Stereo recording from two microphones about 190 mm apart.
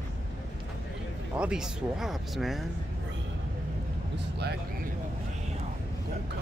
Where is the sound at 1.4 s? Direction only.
5° right (ahead or behind).